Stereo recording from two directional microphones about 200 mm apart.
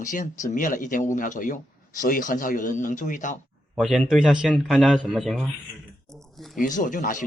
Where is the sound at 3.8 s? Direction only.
Centre (ahead or behind).